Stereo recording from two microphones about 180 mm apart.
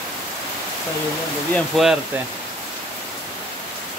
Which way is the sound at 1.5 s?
Centre (ahead or behind).